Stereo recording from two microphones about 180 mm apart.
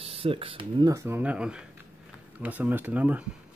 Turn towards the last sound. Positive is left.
turn(degrees=-10)  # may be behind; listen again after turning